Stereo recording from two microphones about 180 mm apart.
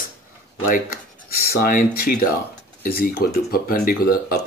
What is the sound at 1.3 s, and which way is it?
Speech, 55° left (ahead or behind).